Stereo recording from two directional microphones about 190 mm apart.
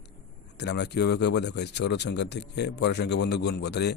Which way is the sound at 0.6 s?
65° left (ahead or behind).